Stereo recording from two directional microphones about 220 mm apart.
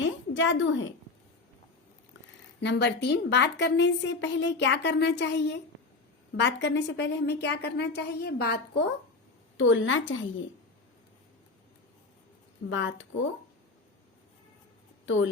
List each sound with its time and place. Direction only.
0.0 s a sound: 60° left (ahead or behind)
2.6 s a woman's voice: 50° left (ahead or behind)
9.6 s a woman's voice: 60° left (ahead or behind)
12.7 s a woman's voice: 60° left (ahead or behind)
15.0 s speech: 60° left (ahead or behind)